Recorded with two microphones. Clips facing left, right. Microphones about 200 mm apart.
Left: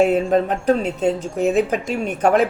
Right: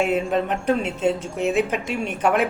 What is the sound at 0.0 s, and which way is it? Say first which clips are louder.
Speech: left 5 dB; 35° left (ahead or behind).